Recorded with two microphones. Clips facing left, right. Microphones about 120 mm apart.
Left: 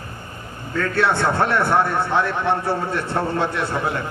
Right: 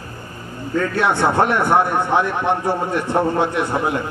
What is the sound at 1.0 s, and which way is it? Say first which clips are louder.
A man's voice: right 2 dB; 15° right (ahead or behind).